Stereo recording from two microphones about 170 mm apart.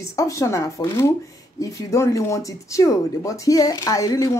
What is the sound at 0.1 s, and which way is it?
Speech, 20° left (ahead or behind).